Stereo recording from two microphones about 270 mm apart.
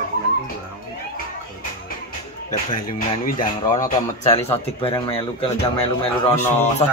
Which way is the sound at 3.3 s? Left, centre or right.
Centre.